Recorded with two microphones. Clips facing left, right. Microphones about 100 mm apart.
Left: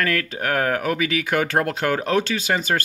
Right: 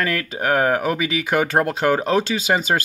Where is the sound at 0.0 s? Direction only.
10° right (ahead or behind).